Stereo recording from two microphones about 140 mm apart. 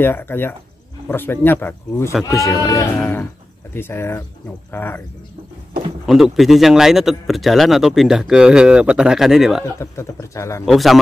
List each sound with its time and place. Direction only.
0.0 s speech: 15° left (ahead or behind)
6.0 s speech: centre (ahead or behind)
9.8 s speech: 20° left (ahead or behind)
10.6 s speech: centre (ahead or behind)